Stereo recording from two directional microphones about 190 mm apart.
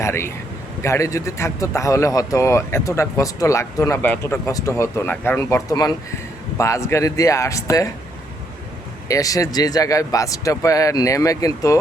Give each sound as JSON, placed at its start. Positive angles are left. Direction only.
{"t": 0.0, "sound": "speech", "side_deg": 15}
{"t": 9.0, "sound": "speech", "side_deg": 15}